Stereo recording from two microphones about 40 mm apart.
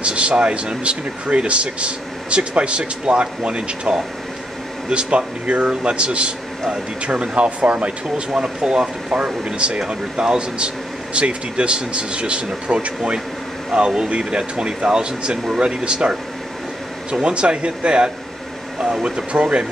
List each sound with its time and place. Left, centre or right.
0.0 s speech: right